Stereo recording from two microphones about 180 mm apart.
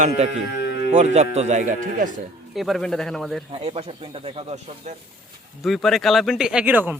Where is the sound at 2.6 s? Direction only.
Centre (ahead or behind).